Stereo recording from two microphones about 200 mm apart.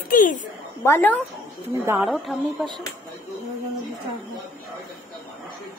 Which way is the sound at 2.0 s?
Centre (ahead or behind).